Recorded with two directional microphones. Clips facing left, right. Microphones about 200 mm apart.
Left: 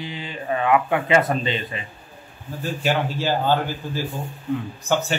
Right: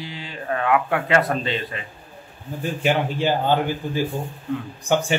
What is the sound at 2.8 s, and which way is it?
A man's voice, 15° right (ahead or behind).